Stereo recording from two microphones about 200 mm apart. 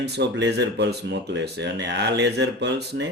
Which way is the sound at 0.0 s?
60° right (ahead or behind).